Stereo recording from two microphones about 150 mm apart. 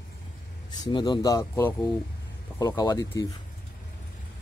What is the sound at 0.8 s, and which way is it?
Speech, 30° left (ahead or behind).